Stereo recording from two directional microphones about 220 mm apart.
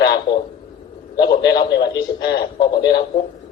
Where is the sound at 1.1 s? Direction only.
20° left (ahead or behind).